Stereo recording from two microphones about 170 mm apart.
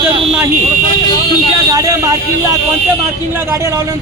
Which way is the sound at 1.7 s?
20° right (ahead or behind).